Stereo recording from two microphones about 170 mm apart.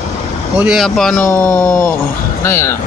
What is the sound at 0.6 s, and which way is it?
Speech, centre (ahead or behind).